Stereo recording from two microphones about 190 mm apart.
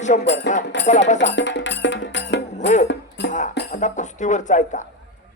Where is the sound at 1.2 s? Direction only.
70° left (ahead or behind).